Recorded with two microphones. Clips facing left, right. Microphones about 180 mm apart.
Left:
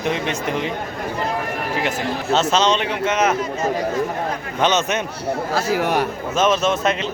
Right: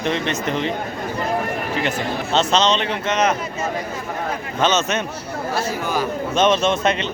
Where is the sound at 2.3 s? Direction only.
10° left (ahead or behind).